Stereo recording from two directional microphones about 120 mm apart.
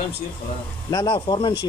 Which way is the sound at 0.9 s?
40° left (ahead or behind).